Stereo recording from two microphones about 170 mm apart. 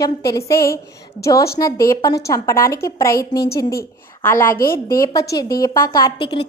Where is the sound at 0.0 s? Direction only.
20° left (ahead or behind).